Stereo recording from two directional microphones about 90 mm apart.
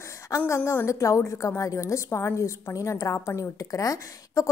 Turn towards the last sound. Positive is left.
turn(degrees=40)  # may be behind; listen again after turning